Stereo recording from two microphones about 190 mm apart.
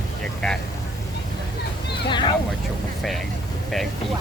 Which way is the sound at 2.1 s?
25° left (ahead or behind).